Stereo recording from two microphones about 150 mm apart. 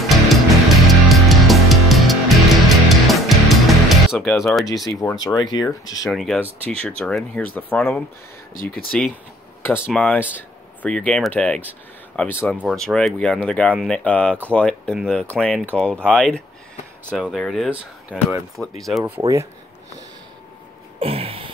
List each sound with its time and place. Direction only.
0.1 s music: centre (ahead or behind)
5.2 s speech: 25° left (ahead or behind)
6.0 s speech: centre (ahead or behind)
21.0 s a sound: 40° right (ahead or behind)